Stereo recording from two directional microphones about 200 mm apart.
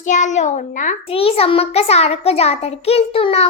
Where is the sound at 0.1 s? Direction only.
35° left (ahead or behind).